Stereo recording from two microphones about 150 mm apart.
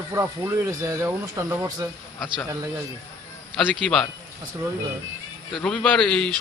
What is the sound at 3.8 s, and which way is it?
Speech, 5° left (ahead or behind).